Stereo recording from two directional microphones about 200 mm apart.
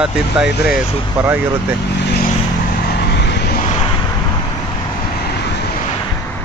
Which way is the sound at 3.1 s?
60° left (ahead or behind).